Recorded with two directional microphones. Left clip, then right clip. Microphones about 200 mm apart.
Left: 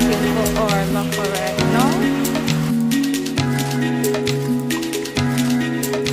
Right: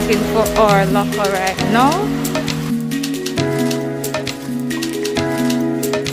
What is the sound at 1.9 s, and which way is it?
Music, centre (ahead or behind).